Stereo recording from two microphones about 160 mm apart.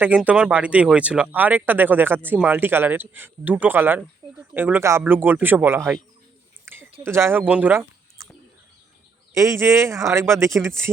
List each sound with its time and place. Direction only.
0.0 s speech: 10° right (ahead or behind)
7.0 s speech: 15° right (ahead or behind)
9.3 s speech: 20° right (ahead or behind)